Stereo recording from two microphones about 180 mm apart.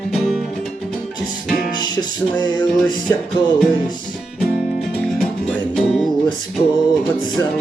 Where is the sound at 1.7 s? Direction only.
25° left (ahead or behind).